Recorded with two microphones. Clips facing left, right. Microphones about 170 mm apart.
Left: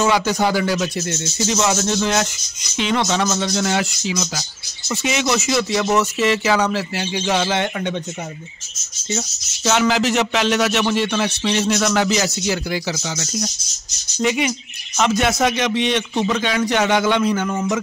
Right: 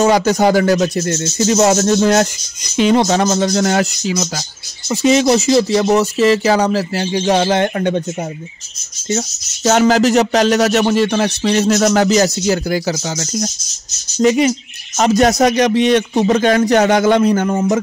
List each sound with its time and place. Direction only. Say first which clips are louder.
0.0 s speech: right 6 dB; 45° right (ahead or behind)
9.7 s speech: right 6 dB; 45° right (ahead or behind)